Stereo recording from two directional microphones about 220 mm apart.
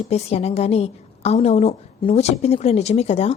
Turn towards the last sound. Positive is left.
turn(degrees=30)  # may be behind; listen again after turning